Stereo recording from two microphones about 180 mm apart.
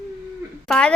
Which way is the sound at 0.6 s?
5° left (ahead or behind).